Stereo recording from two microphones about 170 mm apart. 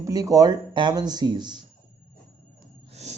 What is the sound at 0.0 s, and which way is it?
Speech, 20° right (ahead or behind).